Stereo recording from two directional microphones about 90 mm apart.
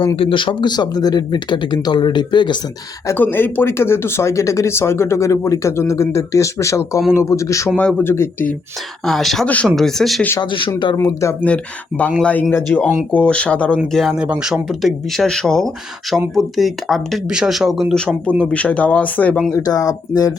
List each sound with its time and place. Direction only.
0.2 s speech: 75° left (ahead or behind); by 2.6 s 55° left (ahead or behind)
3.2 s speech: 25° left (ahead or behind)
7.8 s speech: 15° left (ahead or behind)
9.0 s speech: centre (ahead or behind)
10.4 s speech: 70° left (ahead or behind)
10.9 s speech: 35° left (ahead or behind)
11.4 s speech: 15° left (ahead or behind)
14.2 s speech: 10° right (ahead or behind)
18.3 s speech: 15° left (ahead or behind)
19.5 s speech: 40° left (ahead or behind)